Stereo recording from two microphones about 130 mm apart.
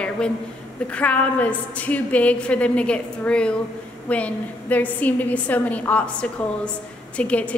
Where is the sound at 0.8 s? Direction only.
10° left (ahead or behind).